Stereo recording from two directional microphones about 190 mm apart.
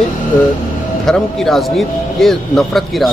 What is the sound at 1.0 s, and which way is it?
Speech, centre (ahead or behind).